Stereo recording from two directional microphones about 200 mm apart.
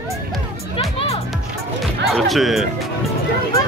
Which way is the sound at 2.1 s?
Centre (ahead or behind).